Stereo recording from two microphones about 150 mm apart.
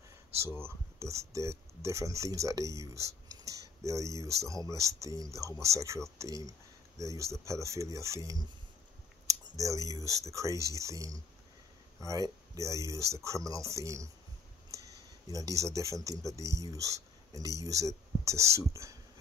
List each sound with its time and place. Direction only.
0.6 s speech: 20° right (ahead or behind)
7.0 s speech: 20° right (ahead or behind)
15.2 s speech: 25° right (ahead or behind)